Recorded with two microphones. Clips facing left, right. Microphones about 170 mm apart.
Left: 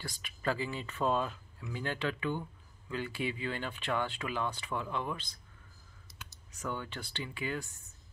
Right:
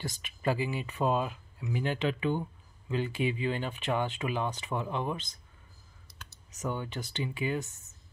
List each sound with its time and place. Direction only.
0.2 s speech: 20° right (ahead or behind)
6.6 s speech: 15° right (ahead or behind)